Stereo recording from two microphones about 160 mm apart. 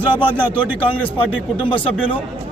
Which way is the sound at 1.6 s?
35° left (ahead or behind).